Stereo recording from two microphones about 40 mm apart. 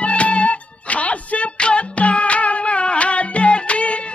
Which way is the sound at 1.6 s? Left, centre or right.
Left.